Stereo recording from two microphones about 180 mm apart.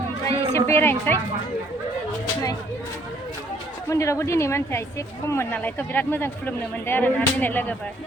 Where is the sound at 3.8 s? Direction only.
15° left (ahead or behind).